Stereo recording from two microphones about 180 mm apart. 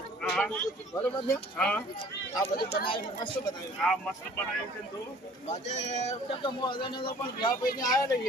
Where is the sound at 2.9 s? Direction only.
25° left (ahead or behind).